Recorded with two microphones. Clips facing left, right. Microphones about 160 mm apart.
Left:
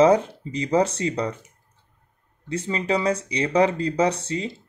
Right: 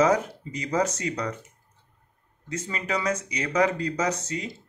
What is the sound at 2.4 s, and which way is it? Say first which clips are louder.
Speech: left 6 dB; 30° left (ahead or behind).